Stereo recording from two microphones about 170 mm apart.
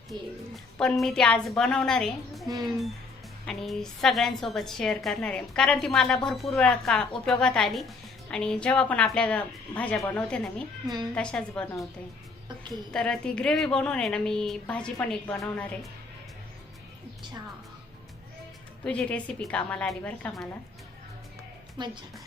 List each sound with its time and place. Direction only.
0.1 s a woman's voice: centre (ahead or behind)
12.9 s a woman's voice: 5° left (ahead or behind)
18.9 s a woman's voice: 5° left (ahead or behind)
21.8 s a woman's voice: 30° right (ahead or behind)